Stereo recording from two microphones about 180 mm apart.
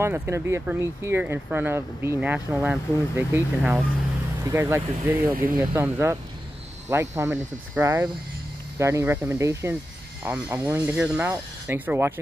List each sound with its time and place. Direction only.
0.0 s speech: 15° right (ahead or behind)
5.3 s speech: 50° right (ahead or behind)
5.6 s speech: 15° right (ahead or behind)